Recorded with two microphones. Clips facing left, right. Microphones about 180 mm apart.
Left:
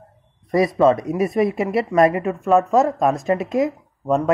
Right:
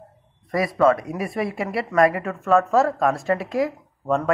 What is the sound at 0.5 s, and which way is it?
Speech, 20° left (ahead or behind).